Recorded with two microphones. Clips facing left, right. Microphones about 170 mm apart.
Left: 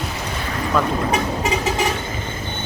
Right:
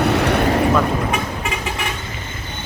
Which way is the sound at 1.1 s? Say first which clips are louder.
Left 3 dB; 35° left (ahead or behind).